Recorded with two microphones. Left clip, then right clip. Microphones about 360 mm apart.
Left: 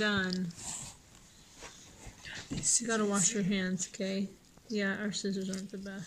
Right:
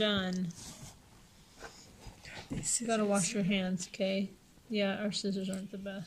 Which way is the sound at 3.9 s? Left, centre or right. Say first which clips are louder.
Right 3 dB; right.